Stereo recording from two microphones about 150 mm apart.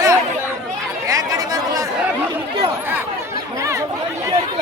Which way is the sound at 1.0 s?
20° right (ahead or behind).